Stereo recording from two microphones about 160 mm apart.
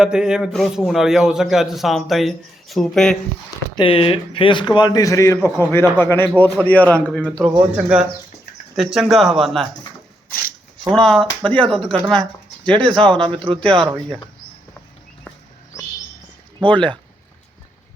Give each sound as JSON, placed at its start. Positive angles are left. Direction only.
{"t": 0.0, "sound": "a man's voice", "side_deg": -5}
{"t": 3.8, "sound": "a man's voice", "side_deg": 35}
{"t": 7.5, "sound": "a man's voice", "side_deg": -10}
{"t": 10.9, "sound": "a man's voice", "side_deg": 5}
{"t": 13.1, "sound": "speech", "side_deg": -30}
{"t": 13.6, "sound": "a man's voice", "side_deg": 5}